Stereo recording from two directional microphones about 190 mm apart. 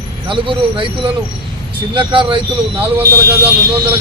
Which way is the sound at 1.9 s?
25° right (ahead or behind).